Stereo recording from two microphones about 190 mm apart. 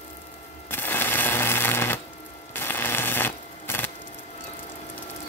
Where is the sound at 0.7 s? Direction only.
10° left (ahead or behind).